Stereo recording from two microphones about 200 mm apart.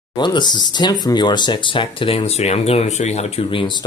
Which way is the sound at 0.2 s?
20° left (ahead or behind).